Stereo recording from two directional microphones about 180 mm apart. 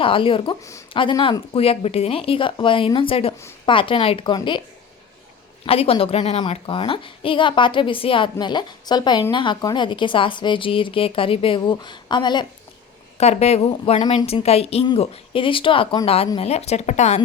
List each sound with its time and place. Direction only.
0.0 s a woman's voice: 30° left (ahead or behind)
5.6 s a woman's voice: 30° left (ahead or behind)
13.1 s speech: 35° left (ahead or behind)